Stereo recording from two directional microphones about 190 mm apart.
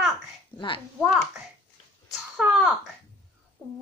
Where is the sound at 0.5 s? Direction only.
25° left (ahead or behind).